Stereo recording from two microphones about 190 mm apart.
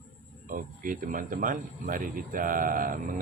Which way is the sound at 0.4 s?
45° right (ahead or behind).